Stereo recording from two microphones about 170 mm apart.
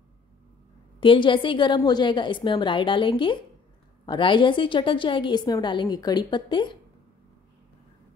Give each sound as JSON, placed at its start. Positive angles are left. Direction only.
{"t": 1.0, "sound": "a woman's voice", "side_deg": 30}